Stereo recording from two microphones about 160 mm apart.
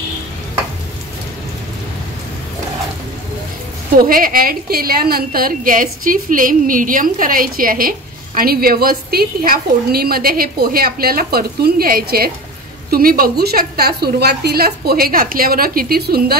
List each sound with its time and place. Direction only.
4.0 s a woman's voice: 65° right (ahead or behind)